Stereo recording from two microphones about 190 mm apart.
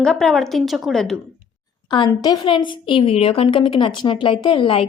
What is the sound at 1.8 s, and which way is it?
A woman's voice, 25° left (ahead or behind).